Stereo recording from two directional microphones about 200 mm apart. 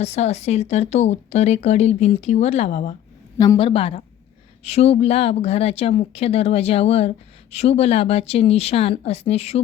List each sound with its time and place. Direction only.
0.0 s speech: 35° left (ahead or behind)
3.3 s a woman's voice: 20° left (ahead or behind)